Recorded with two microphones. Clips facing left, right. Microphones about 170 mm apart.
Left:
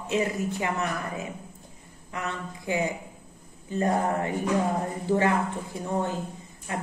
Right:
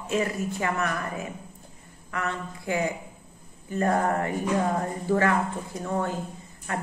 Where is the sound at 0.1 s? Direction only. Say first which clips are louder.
Even; 20° left (ahead or behind).